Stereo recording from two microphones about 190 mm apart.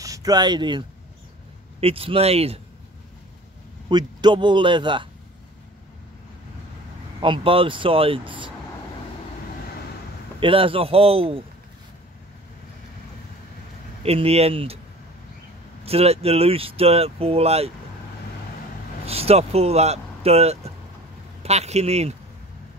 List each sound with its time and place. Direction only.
0.0 s speech: 20° right (ahead or behind)
3.9 s speech: 25° right (ahead or behind)
7.2 s speech: 25° right (ahead or behind)
10.4 s speech: 30° right (ahead or behind)
14.0 s speech: 30° right (ahead or behind)
15.8 s speech: 30° right (ahead or behind)
19.0 s speech: 30° right (ahead or behind)